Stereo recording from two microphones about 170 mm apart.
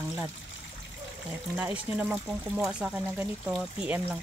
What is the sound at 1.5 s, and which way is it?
Speech, 10° right (ahead or behind).